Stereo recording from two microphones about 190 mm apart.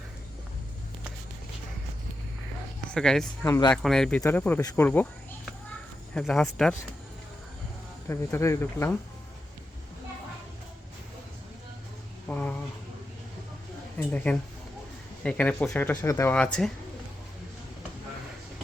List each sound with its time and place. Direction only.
2.9 s speech: 5° left (ahead or behind)
3.4 s speech: 20° left (ahead or behind)
3.7 s speech: 5° left (ahead or behind)
6.1 s speech: centre (ahead or behind)
8.0 s speech: 15° left (ahead or behind)
12.3 s a sound: 10° left (ahead or behind)
14.3 s speech: 10° left (ahead or behind)